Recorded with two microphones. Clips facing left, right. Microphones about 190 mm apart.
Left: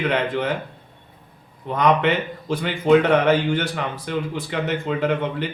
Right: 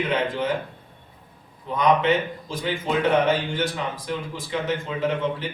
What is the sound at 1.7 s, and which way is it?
A man's voice, 65° left (ahead or behind).